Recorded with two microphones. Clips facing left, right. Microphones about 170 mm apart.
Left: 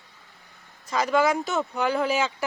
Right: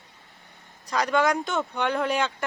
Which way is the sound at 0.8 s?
Centre (ahead or behind).